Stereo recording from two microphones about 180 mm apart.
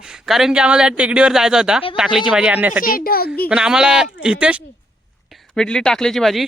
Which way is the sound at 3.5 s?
5° right (ahead or behind).